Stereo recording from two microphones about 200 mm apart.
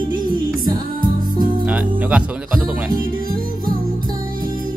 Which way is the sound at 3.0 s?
45° right (ahead or behind).